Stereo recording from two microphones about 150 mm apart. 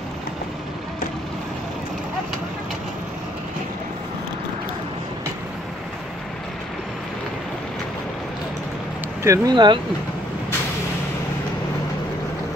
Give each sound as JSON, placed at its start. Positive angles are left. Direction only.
{"t": 9.2, "sound": "speech", "side_deg": -20}